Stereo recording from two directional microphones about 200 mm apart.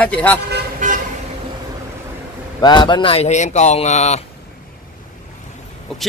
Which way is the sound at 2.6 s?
20° left (ahead or behind).